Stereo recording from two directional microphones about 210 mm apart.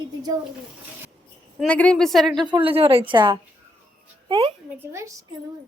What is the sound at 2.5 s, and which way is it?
A woman's voice, 25° right (ahead or behind).